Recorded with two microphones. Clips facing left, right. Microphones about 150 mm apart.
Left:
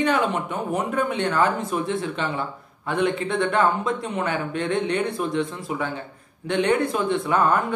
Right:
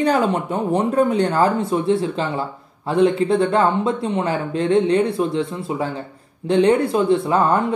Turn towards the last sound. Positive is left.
turn(degrees=-30)  # may be behind; listen again after turning